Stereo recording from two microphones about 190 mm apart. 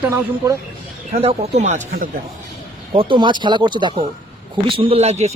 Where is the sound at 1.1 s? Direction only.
35° right (ahead or behind).